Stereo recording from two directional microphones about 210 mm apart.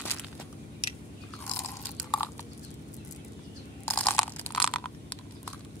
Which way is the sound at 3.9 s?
5° left (ahead or behind).